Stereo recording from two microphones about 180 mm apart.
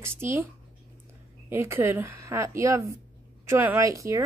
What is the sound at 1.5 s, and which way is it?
A woman's voice, 15° right (ahead or behind).